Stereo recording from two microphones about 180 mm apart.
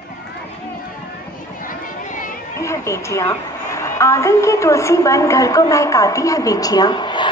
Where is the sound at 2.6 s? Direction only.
15° left (ahead or behind).